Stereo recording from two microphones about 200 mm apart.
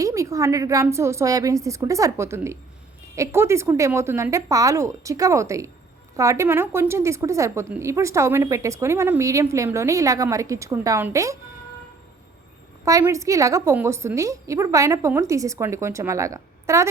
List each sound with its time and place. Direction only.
0.0 s a woman's voice: 15° right (ahead or behind)
12.8 s a woman's voice: 15° right (ahead or behind)